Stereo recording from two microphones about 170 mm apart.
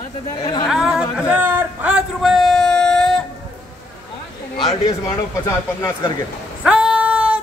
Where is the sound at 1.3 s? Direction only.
10° right (ahead or behind).